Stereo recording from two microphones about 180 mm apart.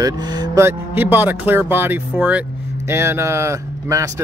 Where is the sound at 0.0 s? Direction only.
20° right (ahead or behind).